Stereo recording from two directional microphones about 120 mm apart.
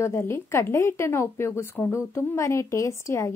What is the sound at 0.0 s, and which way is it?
A woman's voice, 20° left (ahead or behind).